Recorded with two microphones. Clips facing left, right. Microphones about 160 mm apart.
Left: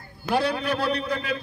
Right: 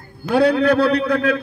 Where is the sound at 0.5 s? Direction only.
65° right (ahead or behind).